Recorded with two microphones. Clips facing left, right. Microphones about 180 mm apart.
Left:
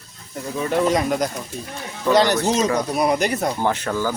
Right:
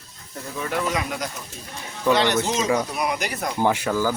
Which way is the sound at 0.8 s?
30° left (ahead or behind).